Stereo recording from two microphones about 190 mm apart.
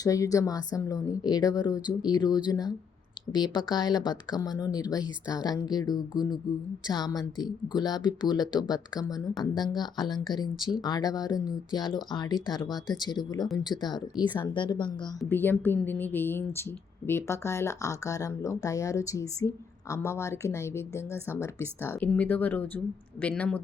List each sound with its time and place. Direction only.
0.0 s speech: 20° left (ahead or behind)
15.3 s speech: 10° left (ahead or behind)